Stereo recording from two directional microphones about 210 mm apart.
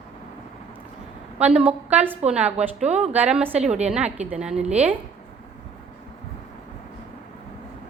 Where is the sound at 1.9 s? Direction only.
10° right (ahead or behind).